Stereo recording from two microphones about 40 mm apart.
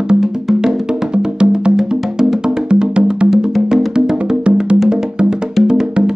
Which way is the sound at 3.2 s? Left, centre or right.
Centre.